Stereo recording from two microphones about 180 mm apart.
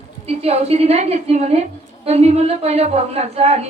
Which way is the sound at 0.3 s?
35° right (ahead or behind).